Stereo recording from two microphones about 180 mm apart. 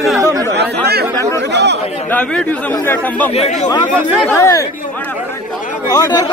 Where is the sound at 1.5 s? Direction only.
70° right (ahead or behind).